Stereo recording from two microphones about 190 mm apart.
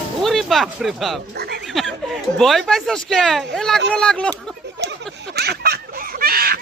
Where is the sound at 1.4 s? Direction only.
55° right (ahead or behind).